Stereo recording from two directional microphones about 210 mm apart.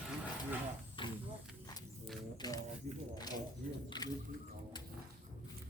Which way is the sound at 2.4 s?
20° left (ahead or behind).